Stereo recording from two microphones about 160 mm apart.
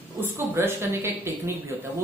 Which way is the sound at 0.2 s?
15° right (ahead or behind).